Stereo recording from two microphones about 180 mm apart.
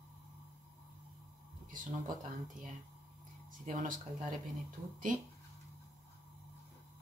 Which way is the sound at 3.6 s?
45° right (ahead or behind).